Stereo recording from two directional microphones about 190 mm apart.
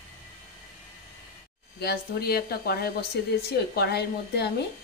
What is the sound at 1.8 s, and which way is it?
Speech, 55° left (ahead or behind).